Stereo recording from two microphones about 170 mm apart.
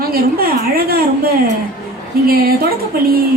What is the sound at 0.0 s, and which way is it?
A woman's voice, 60° right (ahead or behind).